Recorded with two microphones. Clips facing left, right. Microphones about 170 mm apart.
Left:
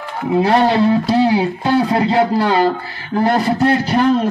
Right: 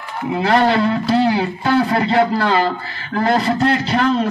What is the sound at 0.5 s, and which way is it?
A man's voice, 15° left (ahead or behind).